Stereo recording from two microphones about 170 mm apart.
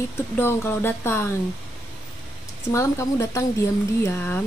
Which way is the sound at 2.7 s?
15° left (ahead or behind).